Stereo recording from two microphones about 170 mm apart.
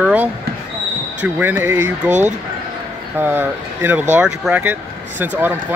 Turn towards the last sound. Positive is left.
turn(degrees=-10)  # may be behind; listen again after turning